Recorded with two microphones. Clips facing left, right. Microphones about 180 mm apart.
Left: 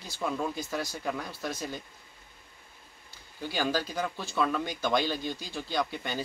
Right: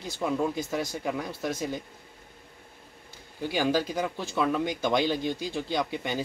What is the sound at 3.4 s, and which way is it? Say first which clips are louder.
Speech: right 4 dB; 15° right (ahead or behind).